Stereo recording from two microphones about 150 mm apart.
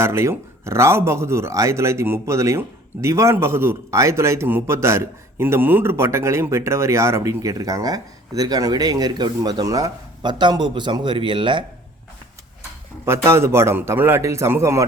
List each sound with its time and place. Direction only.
0.0 s speech: 15° right (ahead or behind); by 11.6 s 35° right (ahead or behind)
13.1 s a man's voice: 20° right (ahead or behind)